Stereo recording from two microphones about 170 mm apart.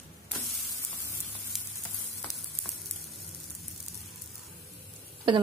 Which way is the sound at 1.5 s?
Centre (ahead or behind).